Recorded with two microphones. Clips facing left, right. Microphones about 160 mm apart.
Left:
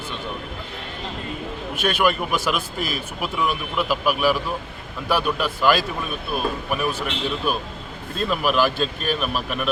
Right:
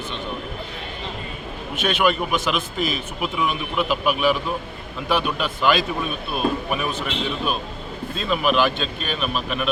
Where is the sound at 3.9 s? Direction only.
5° left (ahead or behind).